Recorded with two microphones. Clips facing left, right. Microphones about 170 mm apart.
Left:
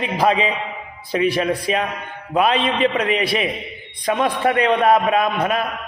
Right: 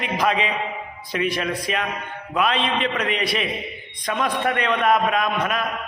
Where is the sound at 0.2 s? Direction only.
35° left (ahead or behind).